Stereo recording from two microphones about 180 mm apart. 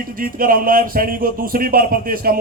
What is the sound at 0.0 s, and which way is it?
Speech, 50° right (ahead or behind).